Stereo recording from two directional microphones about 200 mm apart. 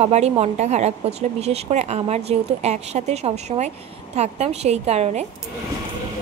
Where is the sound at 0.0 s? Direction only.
30° right (ahead or behind).